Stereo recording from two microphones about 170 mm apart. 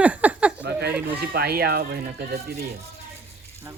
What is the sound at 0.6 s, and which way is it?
Speech, 75° right (ahead or behind).